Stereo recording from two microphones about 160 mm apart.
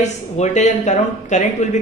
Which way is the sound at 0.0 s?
45° left (ahead or behind).